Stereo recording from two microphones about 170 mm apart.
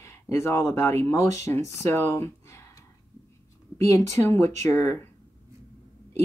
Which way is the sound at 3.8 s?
20° left (ahead or behind).